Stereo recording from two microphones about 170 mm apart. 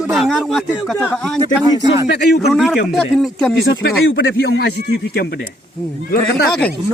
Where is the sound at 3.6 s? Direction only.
80° left.